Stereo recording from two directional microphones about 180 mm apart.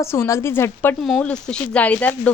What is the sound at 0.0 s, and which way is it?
Speech, 15° left (ahead or behind).